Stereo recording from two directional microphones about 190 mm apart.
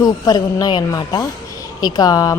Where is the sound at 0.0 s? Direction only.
20° left (ahead or behind).